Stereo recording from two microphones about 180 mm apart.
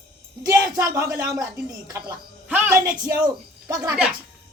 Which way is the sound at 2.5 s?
10° right (ahead or behind).